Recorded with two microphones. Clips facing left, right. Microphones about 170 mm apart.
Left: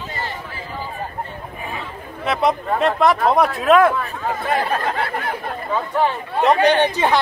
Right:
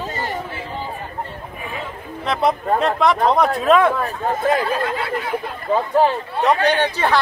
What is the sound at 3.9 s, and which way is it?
Speech, 40° right (ahead or behind).